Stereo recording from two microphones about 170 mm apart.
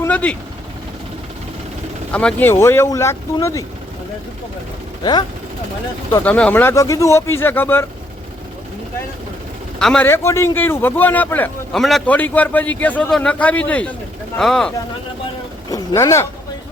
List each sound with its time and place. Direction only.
0.0 s vehicle: 10° left (ahead or behind)
2.1 s a man's voice: 10° left (ahead or behind)
6.1 s a man's voice: 10° left (ahead or behind)
9.7 s a man's voice: 5° left (ahead or behind)
10.1 s a man's voice: 15° left (ahead or behind)
15.7 s a man's voice: 20° left (ahead or behind)